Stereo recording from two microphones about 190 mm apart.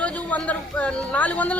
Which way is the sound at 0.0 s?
5° left (ahead or behind).